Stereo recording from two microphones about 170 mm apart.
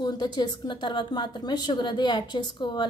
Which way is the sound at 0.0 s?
25° left (ahead or behind).